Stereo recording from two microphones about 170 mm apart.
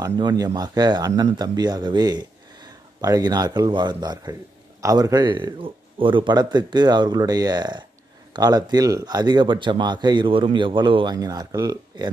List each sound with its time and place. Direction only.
0.0 s speech: 20° right (ahead or behind)